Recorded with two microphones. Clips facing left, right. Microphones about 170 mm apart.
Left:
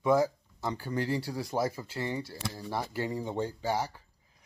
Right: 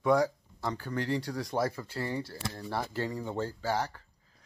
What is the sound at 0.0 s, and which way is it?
Speech, 5° left (ahead or behind).